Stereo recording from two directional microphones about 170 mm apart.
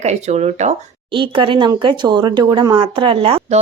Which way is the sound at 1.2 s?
30° right (ahead or behind).